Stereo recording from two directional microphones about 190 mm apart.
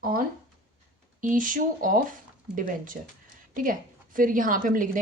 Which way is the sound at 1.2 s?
45° right (ahead or behind).